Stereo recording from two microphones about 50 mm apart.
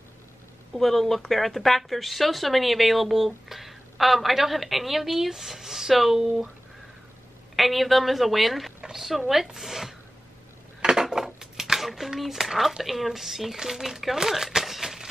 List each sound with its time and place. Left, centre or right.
0.7 s speech: centre
7.5 s speech: centre
8.8 s a sound: centre
9.3 s speech: centre